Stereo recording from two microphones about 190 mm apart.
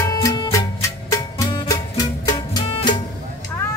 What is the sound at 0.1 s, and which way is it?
Music, 15° left (ahead or behind).